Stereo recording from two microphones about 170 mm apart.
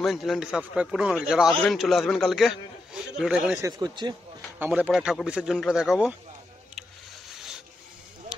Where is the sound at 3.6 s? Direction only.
20° right (ahead or behind).